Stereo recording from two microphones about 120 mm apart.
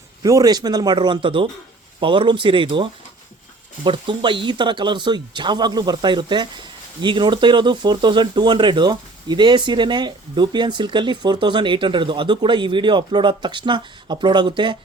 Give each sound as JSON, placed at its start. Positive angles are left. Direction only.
{"t": 0.2, "sound": "speech", "side_deg": -30}